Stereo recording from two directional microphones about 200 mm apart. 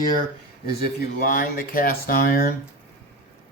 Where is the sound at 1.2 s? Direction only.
45° left (ahead or behind).